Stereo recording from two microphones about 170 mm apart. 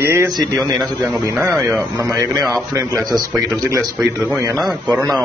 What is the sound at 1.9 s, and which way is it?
A man's voice, 20° right (ahead or behind).